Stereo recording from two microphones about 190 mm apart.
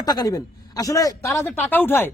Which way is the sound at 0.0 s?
20° left (ahead or behind).